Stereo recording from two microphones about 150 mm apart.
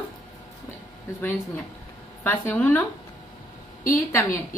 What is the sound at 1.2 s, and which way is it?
Speech, 15° left (ahead or behind).